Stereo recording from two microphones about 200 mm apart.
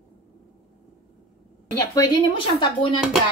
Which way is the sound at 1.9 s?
25° left (ahead or behind).